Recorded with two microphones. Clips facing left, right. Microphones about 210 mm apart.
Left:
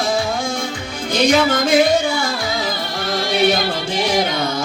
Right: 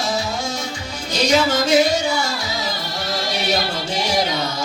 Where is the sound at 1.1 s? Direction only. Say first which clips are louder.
Left 3 dB; 55° left (ahead or behind).